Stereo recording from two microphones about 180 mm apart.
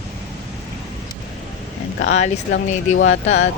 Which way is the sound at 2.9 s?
90° left.